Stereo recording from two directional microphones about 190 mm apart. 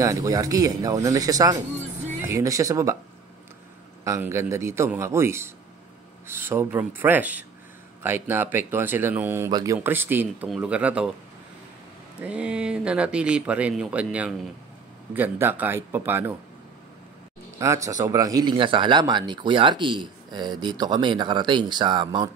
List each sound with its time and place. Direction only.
0.0 s speech: 15° right (ahead or behind)
4.0 s speech: 15° right (ahead or behind)
12.2 s speech: 5° right (ahead or behind)
17.6 s speech: 15° right (ahead or behind)